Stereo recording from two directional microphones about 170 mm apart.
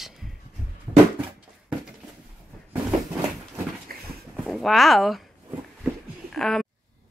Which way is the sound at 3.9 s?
60° right (ahead or behind).